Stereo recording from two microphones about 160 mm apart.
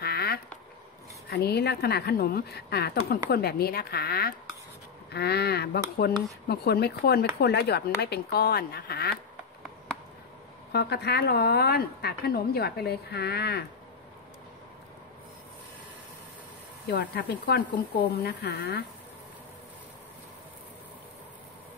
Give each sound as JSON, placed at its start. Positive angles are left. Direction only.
{"t": 0.0, "sound": "a sound", "side_deg": 80}
{"t": 1.3, "sound": "speech", "side_deg": 90}
{"t": 5.1, "sound": "speech", "side_deg": 90}
{"t": 10.7, "sound": "speech", "side_deg": 90}
{"t": 16.8, "sound": "speech", "side_deg": 85}